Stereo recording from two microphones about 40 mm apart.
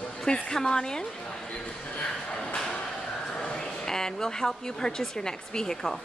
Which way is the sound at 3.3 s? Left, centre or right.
Centre.